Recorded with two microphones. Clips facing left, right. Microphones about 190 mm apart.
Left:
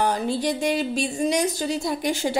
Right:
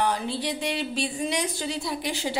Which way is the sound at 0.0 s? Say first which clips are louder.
Left 4 dB; 45° left (ahead or behind).